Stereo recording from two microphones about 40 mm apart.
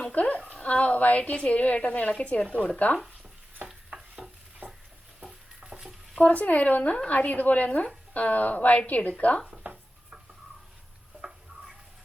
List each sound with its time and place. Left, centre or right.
0.0 s a woman's voice: left
3.8 s stir: right
4.6 s a sound: right
5.2 s stir: right
6.1 s a woman's voice: left